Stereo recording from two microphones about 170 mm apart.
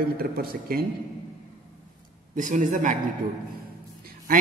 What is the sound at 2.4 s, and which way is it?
Speech, 50° right (ahead or behind).